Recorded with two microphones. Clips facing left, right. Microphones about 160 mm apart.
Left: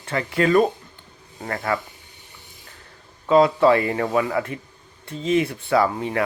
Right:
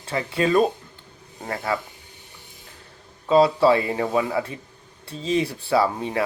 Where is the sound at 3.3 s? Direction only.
30° right (ahead or behind).